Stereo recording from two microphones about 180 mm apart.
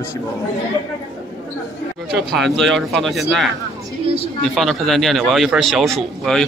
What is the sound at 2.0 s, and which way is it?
Speech, centre (ahead or behind).